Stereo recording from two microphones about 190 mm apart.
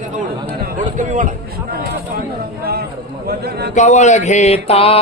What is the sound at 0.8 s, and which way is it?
Speech, 40° right (ahead or behind).